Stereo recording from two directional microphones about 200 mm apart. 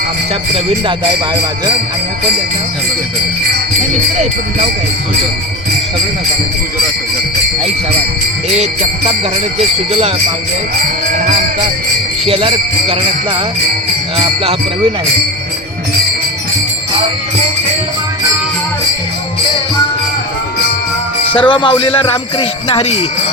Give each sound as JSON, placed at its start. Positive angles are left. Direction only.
{"t": 9.6, "sound": "jingle bell", "side_deg": -30}
{"t": 12.3, "sound": "jingle bell", "side_deg": -25}
{"t": 21.3, "sound": "speech", "side_deg": 25}